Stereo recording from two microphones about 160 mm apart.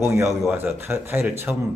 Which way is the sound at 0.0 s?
20° right (ahead or behind).